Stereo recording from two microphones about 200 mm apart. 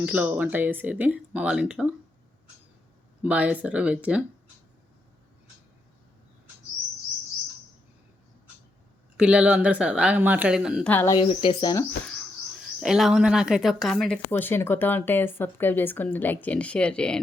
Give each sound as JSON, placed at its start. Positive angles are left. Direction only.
{"t": 0.0, "sound": "speech", "side_deg": -10}
{"t": 3.2, "sound": "speech", "side_deg": -5}
{"t": 9.1, "sound": "a woman's voice", "side_deg": -5}
{"t": 10.8, "sound": "speech", "side_deg": 10}
{"t": 12.0, "sound": "rodents", "side_deg": 0}
{"t": 12.8, "sound": "a woman's voice", "side_deg": 0}